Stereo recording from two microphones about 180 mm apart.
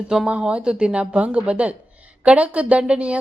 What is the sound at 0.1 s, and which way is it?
A woman's voice, 5° right (ahead or behind).